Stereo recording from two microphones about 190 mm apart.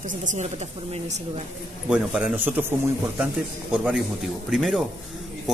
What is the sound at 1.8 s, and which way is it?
A man's voice, 5° right (ahead or behind).